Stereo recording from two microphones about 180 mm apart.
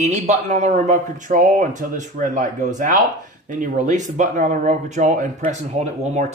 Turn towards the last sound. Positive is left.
turn(degrees=-40)  # may be behind; listen again after turning